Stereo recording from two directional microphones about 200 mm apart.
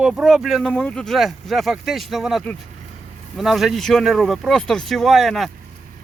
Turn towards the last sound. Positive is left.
turn(degrees=0)  # may be behind; listen again after turning